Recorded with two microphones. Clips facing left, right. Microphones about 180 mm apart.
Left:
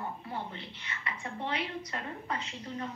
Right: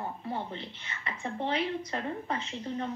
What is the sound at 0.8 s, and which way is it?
A woman's voice, 25° right (ahead or behind).